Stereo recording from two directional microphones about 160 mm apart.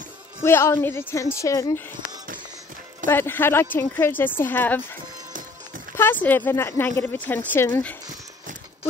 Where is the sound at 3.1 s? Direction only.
15° left (ahead or behind).